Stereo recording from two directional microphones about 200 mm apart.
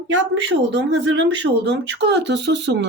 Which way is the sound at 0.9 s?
60° right (ahead or behind).